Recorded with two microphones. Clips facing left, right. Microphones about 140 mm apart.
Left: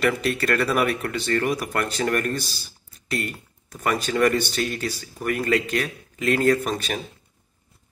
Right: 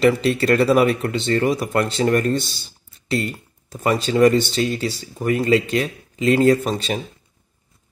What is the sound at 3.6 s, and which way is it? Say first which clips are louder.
Speech: right 4 dB; 25° right (ahead or behind).